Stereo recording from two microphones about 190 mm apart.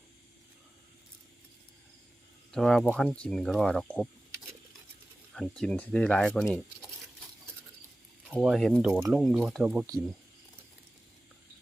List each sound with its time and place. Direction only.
2.5 s speech: centre (ahead or behind)
5.3 s speech: 5° left (ahead or behind)
8.3 s speech: centre (ahead or behind)